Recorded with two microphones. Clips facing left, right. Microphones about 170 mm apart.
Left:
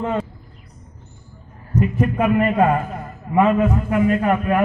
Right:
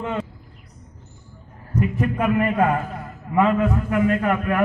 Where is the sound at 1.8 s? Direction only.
20° left (ahead or behind).